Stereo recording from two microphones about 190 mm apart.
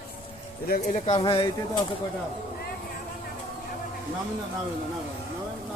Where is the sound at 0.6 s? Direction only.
45° left (ahead or behind); by 1.5 s 25° left (ahead or behind).